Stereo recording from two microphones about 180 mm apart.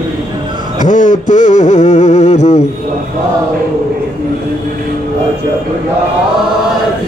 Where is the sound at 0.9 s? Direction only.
45° left (ahead or behind).